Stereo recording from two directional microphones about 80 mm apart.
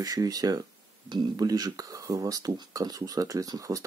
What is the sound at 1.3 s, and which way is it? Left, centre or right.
Speech, right.